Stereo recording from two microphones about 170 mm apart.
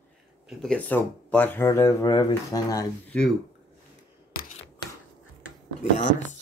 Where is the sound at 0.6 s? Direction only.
5° left (ahead or behind).